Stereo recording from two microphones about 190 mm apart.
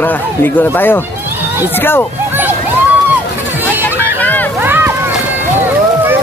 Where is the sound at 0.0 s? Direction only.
10° left (ahead or behind).